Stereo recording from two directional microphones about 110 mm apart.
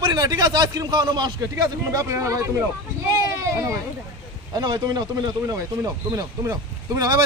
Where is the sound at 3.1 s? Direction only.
30° right (ahead or behind).